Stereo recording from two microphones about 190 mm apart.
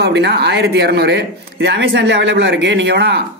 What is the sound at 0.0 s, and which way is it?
Speech, 60° right (ahead or behind).